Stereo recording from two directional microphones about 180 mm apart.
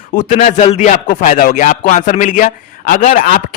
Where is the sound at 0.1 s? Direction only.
50° left (ahead or behind).